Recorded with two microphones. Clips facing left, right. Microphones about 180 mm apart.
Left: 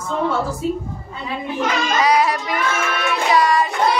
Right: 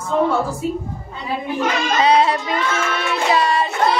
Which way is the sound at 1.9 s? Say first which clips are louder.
Right 2 dB; 25° right (ahead or behind).